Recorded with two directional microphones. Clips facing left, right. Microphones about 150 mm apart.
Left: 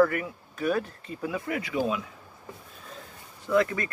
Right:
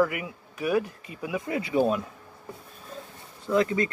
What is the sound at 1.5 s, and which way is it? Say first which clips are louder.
Speech: right 2 dB; 30° right (ahead or behind).